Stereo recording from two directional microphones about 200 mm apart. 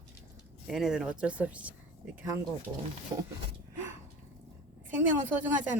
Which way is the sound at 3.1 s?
20° right (ahead or behind).